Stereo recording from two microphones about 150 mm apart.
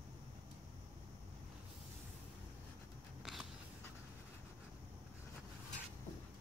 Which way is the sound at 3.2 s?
Centre (ahead or behind).